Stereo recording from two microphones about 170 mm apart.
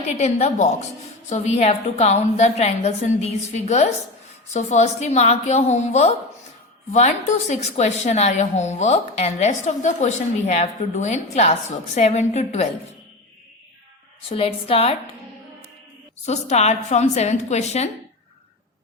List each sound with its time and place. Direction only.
0.1 s a woman's voice: 40° left (ahead or behind)
14.2 s a woman's voice: 30° left (ahead or behind)
16.2 s a woman's voice: 40° left (ahead or behind)